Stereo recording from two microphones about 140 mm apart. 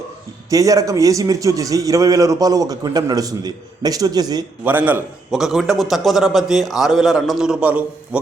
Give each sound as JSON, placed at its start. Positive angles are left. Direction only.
{"t": 0.5, "sound": "a man's voice", "side_deg": -25}
{"t": 4.6, "sound": "a man's voice", "side_deg": -10}
{"t": 5.3, "sound": "a man's voice", "side_deg": 0}